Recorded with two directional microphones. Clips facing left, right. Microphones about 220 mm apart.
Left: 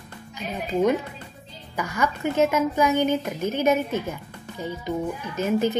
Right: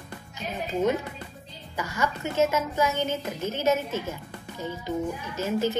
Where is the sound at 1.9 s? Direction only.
15° left (ahead or behind).